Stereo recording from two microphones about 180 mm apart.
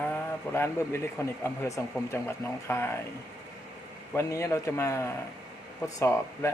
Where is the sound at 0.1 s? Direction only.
15° left (ahead or behind).